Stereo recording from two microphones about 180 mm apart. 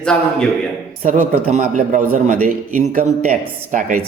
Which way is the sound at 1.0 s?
45° right (ahead or behind).